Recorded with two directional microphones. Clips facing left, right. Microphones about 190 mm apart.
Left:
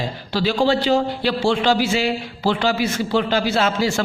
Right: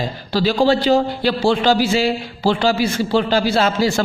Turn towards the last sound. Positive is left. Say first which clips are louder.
# right 3 dB
turn(degrees=-35)  # may be behind; listen again after turning